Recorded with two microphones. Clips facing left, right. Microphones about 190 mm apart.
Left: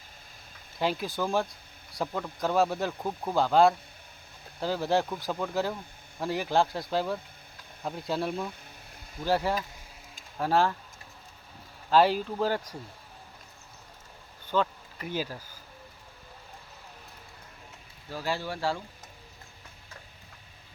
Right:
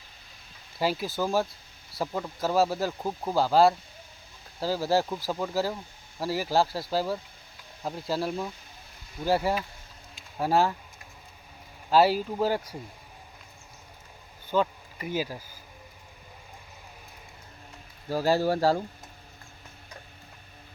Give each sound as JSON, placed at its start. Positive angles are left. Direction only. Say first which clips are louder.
{"t": 0.8, "sound": "speech", "louder": "right 2 dB", "side_deg": -5}
{"t": 11.9, "sound": "speech", "louder": "right 1 dB", "side_deg": -10}
{"t": 14.4, "sound": "speech", "louder": "right 2 dB", "side_deg": -10}
{"t": 18.1, "sound": "speech", "louder": "right 9 dB", "side_deg": -40}